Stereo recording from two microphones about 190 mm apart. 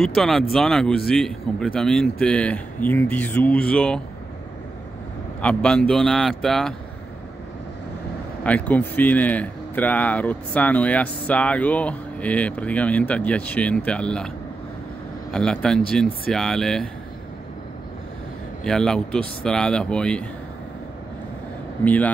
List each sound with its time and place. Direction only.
0.0 s speech: centre (ahead or behind)
5.4 s speech: 5° left (ahead or behind)
8.5 s speech: 10° left (ahead or behind)
15.3 s speech: 5° left (ahead or behind)
18.6 s speech: 5° left (ahead or behind)
21.8 s speech: 10° left (ahead or behind)